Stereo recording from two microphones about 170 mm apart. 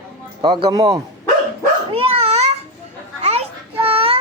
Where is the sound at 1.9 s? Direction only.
35° right (ahead or behind).